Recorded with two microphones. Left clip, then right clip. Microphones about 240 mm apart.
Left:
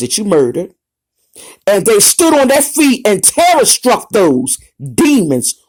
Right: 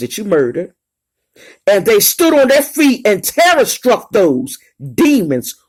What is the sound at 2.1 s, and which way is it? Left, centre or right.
Speech, left.